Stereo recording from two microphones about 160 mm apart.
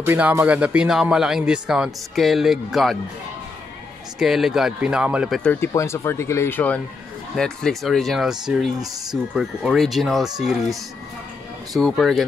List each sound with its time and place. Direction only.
0.0 s speech: 15° right (ahead or behind)
4.2 s speech: centre (ahead or behind)
5.4 s speech: 10° left (ahead or behind)